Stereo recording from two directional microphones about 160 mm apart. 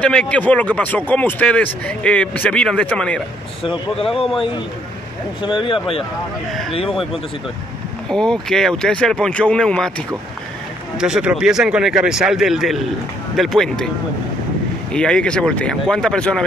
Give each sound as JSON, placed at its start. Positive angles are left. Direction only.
{"t": 0.0, "sound": "a man's voice", "side_deg": 10}
{"t": 5.4, "sound": "speech", "side_deg": 30}
{"t": 6.8, "sound": "speech", "side_deg": 0}
{"t": 14.9, "sound": "speech", "side_deg": 5}